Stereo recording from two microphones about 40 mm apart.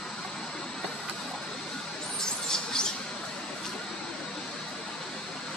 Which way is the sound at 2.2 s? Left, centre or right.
Centre.